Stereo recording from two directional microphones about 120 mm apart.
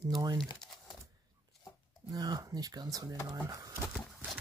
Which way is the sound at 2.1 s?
30° right (ahead or behind).